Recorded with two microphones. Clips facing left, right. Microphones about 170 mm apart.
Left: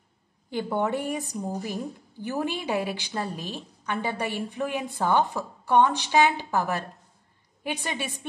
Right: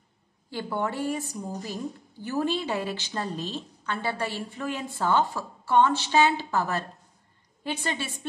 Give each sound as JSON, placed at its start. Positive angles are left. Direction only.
{"t": 0.5, "sound": "a woman's voice", "side_deg": 20}